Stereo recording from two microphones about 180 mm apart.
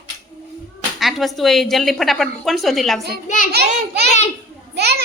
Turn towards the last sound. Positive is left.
turn(degrees=-65)  # may be behind; listen again after turning